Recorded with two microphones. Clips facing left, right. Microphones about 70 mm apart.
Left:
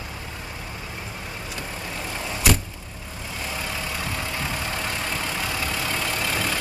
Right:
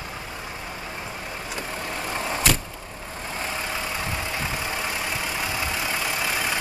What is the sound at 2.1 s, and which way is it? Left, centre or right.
Vehicle, right.